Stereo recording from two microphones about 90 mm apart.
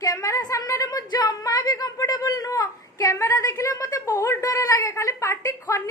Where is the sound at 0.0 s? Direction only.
40° left (ahead or behind).